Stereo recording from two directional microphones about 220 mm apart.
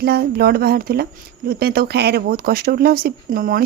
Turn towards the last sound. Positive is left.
turn(degrees=-40)  # may be behind; listen again after turning